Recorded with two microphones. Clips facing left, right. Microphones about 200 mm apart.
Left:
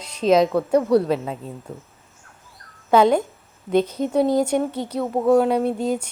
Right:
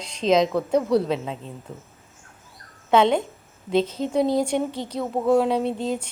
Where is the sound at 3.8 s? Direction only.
25° right (ahead or behind).